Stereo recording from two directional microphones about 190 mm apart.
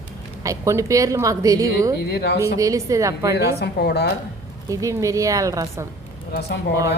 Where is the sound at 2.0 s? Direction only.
60° left (ahead or behind).